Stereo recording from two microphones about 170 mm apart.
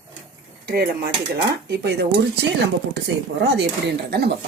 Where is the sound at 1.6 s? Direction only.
75° right (ahead or behind).